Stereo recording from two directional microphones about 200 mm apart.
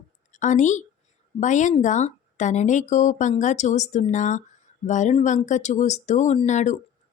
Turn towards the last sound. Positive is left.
turn(degrees=35)  # may be behind; listen again after turning